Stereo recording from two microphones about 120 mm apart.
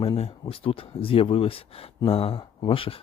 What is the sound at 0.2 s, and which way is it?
Speech, 50° left (ahead or behind).